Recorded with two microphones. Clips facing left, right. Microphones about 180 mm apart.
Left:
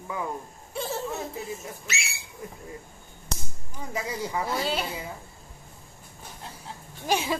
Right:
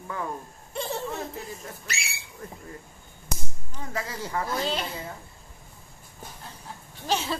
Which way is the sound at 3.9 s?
15° left (ahead or behind).